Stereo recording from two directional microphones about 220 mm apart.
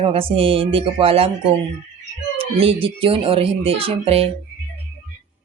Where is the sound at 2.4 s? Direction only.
25° right (ahead or behind).